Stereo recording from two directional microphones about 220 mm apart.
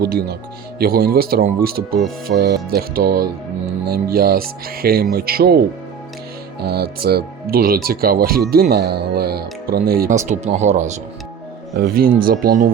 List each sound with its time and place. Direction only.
0.0 s speech: 45° right (ahead or behind)
6.6 s speech: 45° right (ahead or behind)